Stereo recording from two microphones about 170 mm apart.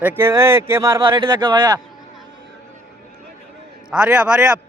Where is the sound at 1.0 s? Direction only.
25° right (ahead or behind).